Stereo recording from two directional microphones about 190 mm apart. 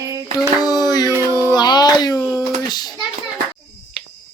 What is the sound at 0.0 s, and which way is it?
Hands, 15° right (ahead or behind).